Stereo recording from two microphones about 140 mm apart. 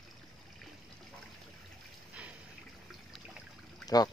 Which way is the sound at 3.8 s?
25° left (ahead or behind).